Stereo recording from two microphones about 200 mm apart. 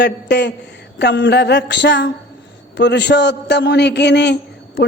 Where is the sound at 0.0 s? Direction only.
55° left (ahead or behind).